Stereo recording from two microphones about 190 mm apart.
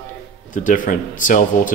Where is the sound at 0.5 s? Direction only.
45° left (ahead or behind).